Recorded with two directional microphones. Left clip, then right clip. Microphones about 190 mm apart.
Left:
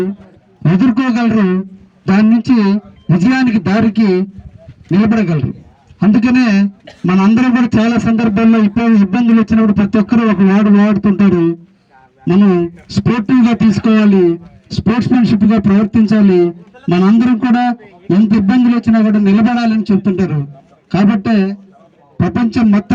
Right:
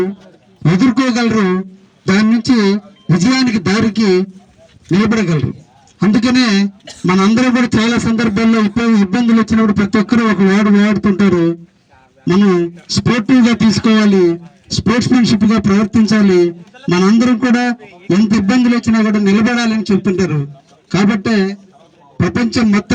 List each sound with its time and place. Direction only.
0.6 s speech: 35° left (ahead or behind)